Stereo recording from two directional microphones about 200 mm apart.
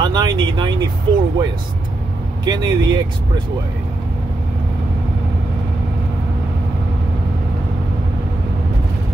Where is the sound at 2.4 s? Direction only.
20° right (ahead or behind).